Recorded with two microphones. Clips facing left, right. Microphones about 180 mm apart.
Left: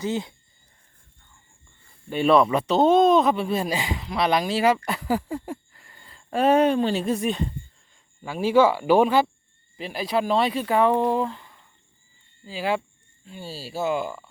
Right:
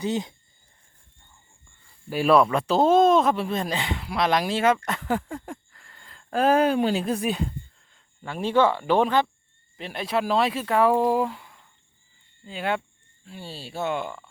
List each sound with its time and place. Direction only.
0.0 s speech: 20° right (ahead or behind)
2.0 s speech: 5° right (ahead or behind)